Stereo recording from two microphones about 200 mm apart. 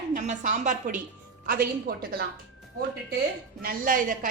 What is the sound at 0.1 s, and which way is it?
A woman's voice, 40° right (ahead or behind).